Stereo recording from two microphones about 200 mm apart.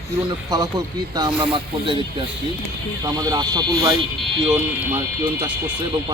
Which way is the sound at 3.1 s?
20° right (ahead or behind).